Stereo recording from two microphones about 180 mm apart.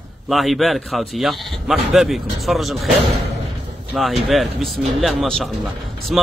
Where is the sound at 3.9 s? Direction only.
Centre (ahead or behind).